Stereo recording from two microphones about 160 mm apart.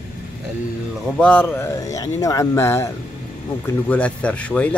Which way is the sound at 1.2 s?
10° left (ahead or behind).